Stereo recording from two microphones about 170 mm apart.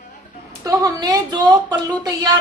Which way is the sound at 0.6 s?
20° right (ahead or behind).